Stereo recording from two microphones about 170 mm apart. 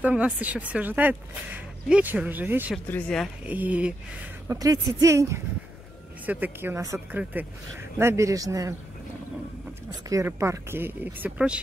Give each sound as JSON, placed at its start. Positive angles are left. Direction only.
{"t": 0.0, "sound": "speech", "side_deg": -10}
{"t": 2.7, "sound": "speech", "side_deg": 5}
{"t": 3.4, "sound": "speech", "side_deg": -10}
{"t": 4.5, "sound": "speech", "side_deg": -20}
{"t": 9.8, "sound": "speech", "side_deg": -20}